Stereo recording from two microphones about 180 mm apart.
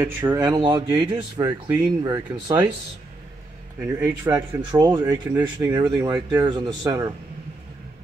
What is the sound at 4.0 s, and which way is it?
Speech, 20° right (ahead or behind).